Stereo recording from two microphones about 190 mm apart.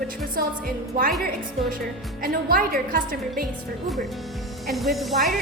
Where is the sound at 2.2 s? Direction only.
50° right (ahead or behind).